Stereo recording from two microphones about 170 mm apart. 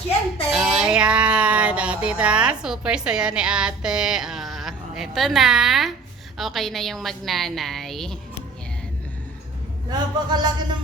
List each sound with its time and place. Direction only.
0.5 s a sound: 5° right (ahead or behind)
6.3 s a woman's voice: centre (ahead or behind)
9.9 s a man's voice: 25° right (ahead or behind)